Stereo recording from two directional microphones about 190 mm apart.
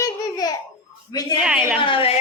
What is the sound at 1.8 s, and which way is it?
Speech, 30° left (ahead or behind).